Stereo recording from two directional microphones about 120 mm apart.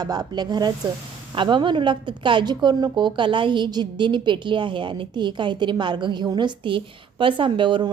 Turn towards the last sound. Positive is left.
turn(degrees=-45)  # may be behind; listen again after turning